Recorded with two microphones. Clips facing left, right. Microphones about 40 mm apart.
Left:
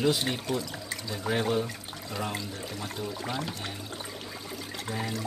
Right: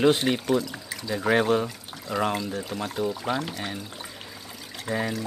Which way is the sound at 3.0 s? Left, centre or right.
Right.